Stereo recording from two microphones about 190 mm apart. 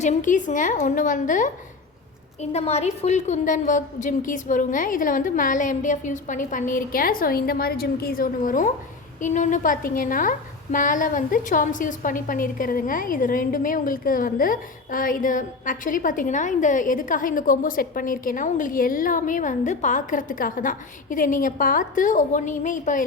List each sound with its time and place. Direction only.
0.0 s a woman's voice: 40° left (ahead or behind)